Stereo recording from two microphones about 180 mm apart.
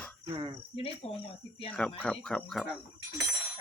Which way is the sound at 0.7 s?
30° left (ahead or behind).